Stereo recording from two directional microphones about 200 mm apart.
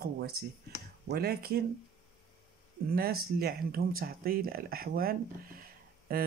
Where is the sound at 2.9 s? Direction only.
50° right (ahead or behind).